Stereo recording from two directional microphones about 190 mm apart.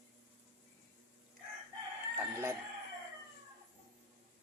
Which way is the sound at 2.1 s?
15° right (ahead or behind).